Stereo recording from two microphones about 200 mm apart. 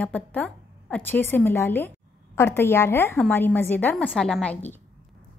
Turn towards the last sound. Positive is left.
turn(degrees=5)  # may be behind; listen again after turning